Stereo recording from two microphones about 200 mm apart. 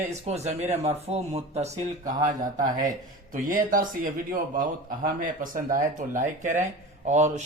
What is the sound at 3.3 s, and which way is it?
A man's voice, 45° right (ahead or behind).